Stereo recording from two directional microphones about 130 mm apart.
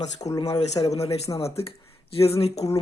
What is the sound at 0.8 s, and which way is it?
Speech, 55° left (ahead or behind).